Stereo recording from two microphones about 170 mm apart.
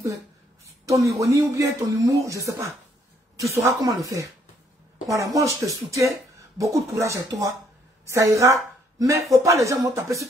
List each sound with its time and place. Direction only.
0.8 s a woman's voice: 20° right (ahead or behind)